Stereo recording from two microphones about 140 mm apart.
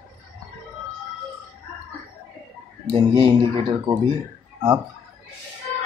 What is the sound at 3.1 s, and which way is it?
Speech, 35° right (ahead or behind).